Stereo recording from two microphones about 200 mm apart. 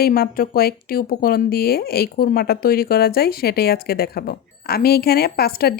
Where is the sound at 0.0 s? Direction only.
45° left (ahead or behind).